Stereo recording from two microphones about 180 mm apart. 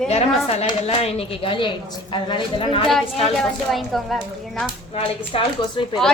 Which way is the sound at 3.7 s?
Centre (ahead or behind).